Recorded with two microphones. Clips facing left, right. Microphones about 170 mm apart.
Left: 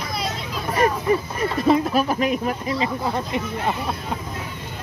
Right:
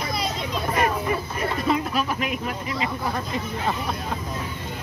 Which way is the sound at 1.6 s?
40° left (ahead or behind).